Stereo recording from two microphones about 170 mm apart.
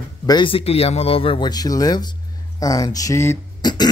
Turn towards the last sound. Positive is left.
turn(degrees=25)  # may be behind; listen again after turning